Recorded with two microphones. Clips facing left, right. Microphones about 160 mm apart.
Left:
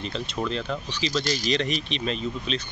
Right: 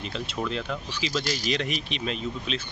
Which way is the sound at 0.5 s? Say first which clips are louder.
Left 2 dB; 5° right (ahead or behind).